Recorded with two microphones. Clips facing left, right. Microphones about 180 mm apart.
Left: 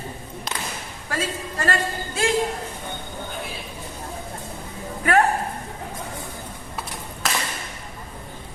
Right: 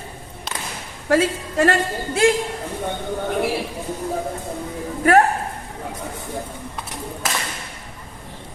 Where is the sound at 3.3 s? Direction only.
75° right (ahead or behind).